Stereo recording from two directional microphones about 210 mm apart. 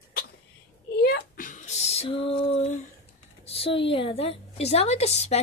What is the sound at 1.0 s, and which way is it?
A woman's voice, 45° left (ahead or behind).